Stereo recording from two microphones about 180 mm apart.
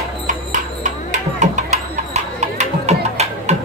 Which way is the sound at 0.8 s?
45° right (ahead or behind).